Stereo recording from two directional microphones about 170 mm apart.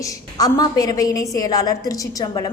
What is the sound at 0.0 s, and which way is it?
A woman's voice, 20° left (ahead or behind).